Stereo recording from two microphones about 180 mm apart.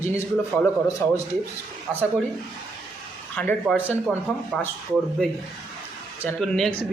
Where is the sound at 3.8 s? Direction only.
10° right (ahead or behind).